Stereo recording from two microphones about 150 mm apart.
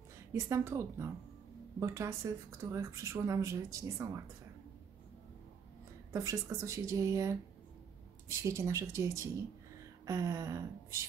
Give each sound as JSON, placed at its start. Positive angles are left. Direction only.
{"t": 0.3, "sound": "speech", "side_deg": -20}
{"t": 6.1, "sound": "speech", "side_deg": -20}